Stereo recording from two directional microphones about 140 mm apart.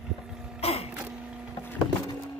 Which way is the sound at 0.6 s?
45° left (ahead or behind).